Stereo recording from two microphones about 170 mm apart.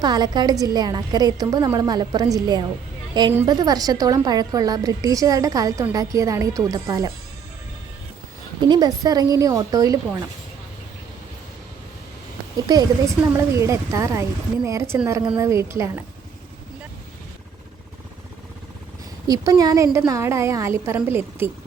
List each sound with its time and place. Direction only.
0.0 s a woman's voice: 25° right (ahead or behind)
8.6 s a woman's voice: 25° right (ahead or behind)
12.5 s speech: 25° right (ahead or behind)
19.3 s speech: 20° right (ahead or behind)